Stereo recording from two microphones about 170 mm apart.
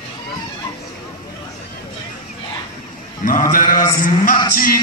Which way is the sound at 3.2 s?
55° left (ahead or behind).